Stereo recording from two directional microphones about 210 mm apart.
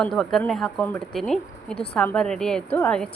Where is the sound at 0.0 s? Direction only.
Centre (ahead or behind).